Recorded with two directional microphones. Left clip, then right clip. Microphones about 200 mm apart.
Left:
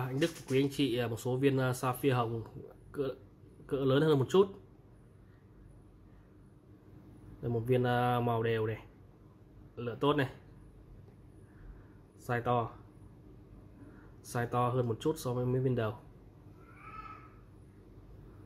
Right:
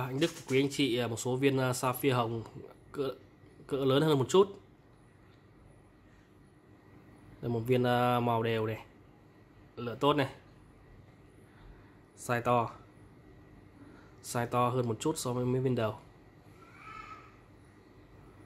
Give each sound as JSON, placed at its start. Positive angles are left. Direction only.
{"t": 0.0, "sound": "speech", "side_deg": -10}
{"t": 7.4, "sound": "speech", "side_deg": -10}
{"t": 12.3, "sound": "speech", "side_deg": -15}
{"t": 14.2, "sound": "speech", "side_deg": -10}